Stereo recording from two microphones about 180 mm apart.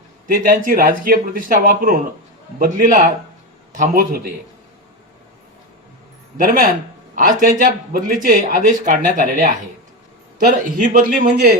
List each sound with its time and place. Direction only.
0.3 s speech: 50° right (ahead or behind)
6.3 s speech: 50° right (ahead or behind)
10.6 s speech: 50° right (ahead or behind)